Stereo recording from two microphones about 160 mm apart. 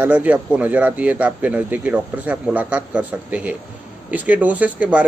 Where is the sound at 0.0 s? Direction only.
10° right (ahead or behind).